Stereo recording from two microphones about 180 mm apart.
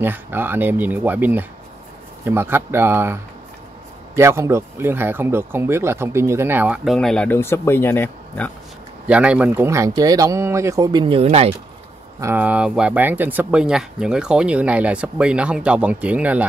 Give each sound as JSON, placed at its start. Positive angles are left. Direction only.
{"t": 0.0, "sound": "speech", "side_deg": -10}
{"t": 9.0, "sound": "speech", "side_deg": -5}
{"t": 12.2, "sound": "speech", "side_deg": -10}